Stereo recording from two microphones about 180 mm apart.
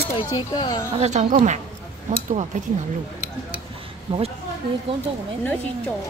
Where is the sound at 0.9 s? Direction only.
40° right (ahead or behind).